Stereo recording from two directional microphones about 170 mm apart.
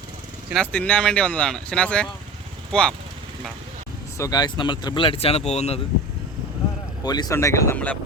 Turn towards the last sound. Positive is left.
turn(degrees=10)  # may be behind; listen again after turning